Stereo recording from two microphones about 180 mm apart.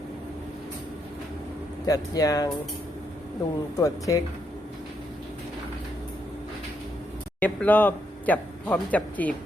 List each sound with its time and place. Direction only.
1.9 s speech: 20° left (ahead or behind)
3.8 s speech: 20° left (ahead or behind)
7.3 s speech: 10° left (ahead or behind)